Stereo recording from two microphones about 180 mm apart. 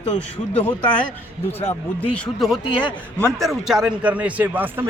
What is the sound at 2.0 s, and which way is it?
Speech, 5° left (ahead or behind).